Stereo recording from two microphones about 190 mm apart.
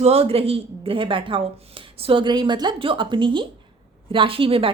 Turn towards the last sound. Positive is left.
turn(degrees=-30)  # may be behind; listen again after turning